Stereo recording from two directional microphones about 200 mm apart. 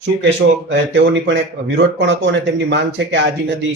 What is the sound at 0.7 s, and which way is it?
Speech, 65° right (ahead or behind).